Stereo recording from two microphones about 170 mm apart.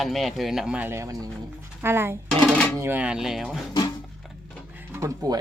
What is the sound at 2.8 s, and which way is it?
Speech, 10° right (ahead or behind).